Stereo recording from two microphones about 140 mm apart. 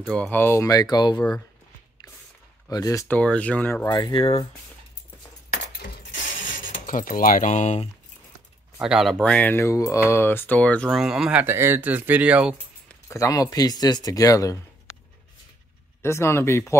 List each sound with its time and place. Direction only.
0.1 s speech: 10° left (ahead or behind); by 1.2 s 30° left (ahead or behind)
2.7 s speech: 25° left (ahead or behind)
3.1 s speech: 10° left (ahead or behind)
3.8 s speech: 30° left (ahead or behind)
5.5 s coin: 80° left; by 7.9 s 55° left (ahead or behind)
8.8 s speech: centre (ahead or behind)
11.0 s speech: 5° right (ahead or behind)
11.4 s speech: 15° right (ahead or behind)
13.1 s speech: 25° left (ahead or behind)
16.0 s speech: 20° left (ahead or behind)